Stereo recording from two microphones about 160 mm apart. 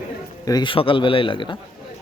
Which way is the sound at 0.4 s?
25° left (ahead or behind).